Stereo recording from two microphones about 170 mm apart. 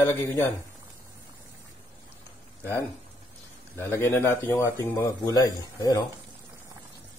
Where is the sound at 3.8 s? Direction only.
15° left (ahead or behind).